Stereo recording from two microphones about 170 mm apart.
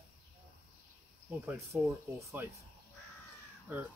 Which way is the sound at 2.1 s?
15° right (ahead or behind).